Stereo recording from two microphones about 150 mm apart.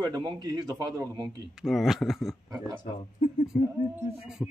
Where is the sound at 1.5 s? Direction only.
Centre (ahead or behind).